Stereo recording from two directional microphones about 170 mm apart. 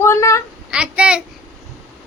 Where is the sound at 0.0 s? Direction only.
15° left (ahead or behind).